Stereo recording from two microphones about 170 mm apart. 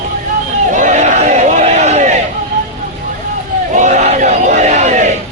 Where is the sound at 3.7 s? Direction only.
45° right (ahead or behind).